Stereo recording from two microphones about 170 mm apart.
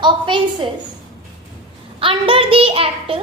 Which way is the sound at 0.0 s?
30° right (ahead or behind).